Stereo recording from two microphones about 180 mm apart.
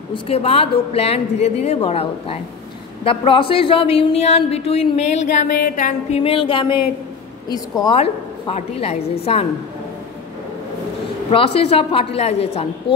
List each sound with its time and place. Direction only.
0.1 s a woman's voice: 30° left (ahead or behind)
11.2 s a woman's voice: 30° left (ahead or behind)